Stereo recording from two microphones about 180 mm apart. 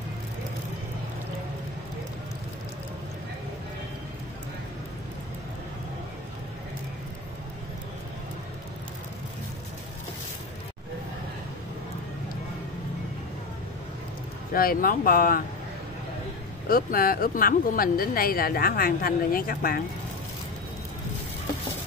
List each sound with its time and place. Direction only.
14.5 s a woman's voice: 55° left (ahead or behind)
16.6 s a woman's voice: 55° left (ahead or behind)